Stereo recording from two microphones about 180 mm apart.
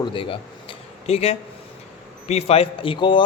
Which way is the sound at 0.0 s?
30° left (ahead or behind).